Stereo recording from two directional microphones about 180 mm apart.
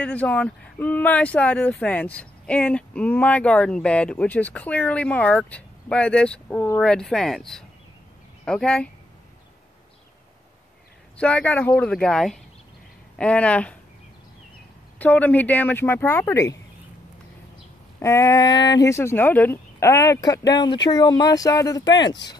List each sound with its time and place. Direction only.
0.0 s speech: 10° left (ahead or behind)
11.1 s speech: 5° left (ahead or behind)
15.0 s speech: 10° left (ahead or behind)
17.9 s speech: 15° left (ahead or behind)